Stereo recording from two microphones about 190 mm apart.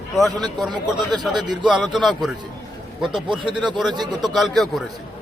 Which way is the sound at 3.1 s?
25° right (ahead or behind).